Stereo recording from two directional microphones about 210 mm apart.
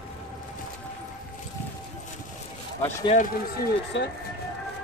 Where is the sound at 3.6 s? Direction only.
55° left (ahead or behind).